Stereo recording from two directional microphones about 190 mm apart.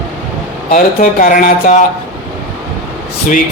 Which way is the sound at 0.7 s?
45° left (ahead or behind).